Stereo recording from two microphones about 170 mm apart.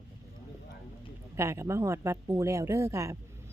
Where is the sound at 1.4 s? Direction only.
15° right (ahead or behind).